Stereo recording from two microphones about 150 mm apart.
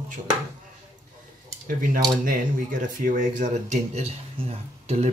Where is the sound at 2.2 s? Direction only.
65° right (ahead or behind).